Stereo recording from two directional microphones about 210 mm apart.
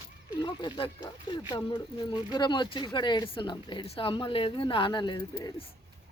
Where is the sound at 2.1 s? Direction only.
20° left (ahead or behind).